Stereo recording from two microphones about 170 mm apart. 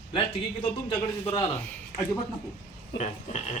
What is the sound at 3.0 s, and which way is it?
Speech, 45° left (ahead or behind).